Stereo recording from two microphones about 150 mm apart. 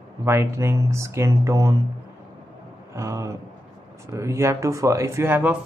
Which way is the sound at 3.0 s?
20° right (ahead or behind).